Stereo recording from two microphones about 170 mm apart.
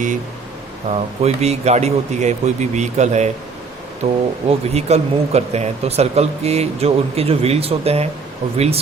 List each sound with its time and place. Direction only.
0.9 s speech: 40° right (ahead or behind)